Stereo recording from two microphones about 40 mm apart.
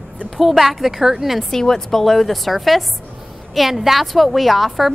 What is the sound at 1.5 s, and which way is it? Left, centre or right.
A woman's voice, centre.